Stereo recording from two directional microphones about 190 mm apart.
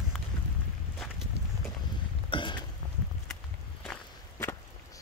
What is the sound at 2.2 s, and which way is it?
Burping, 25° left (ahead or behind).